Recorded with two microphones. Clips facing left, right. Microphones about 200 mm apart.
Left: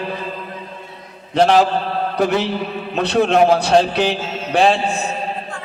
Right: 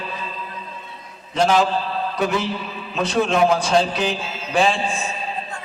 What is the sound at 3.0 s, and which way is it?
A man's voice, 65° left (ahead or behind).